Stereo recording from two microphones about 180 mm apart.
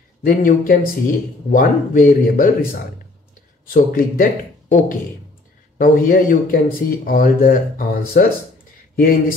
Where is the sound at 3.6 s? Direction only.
50° left (ahead or behind).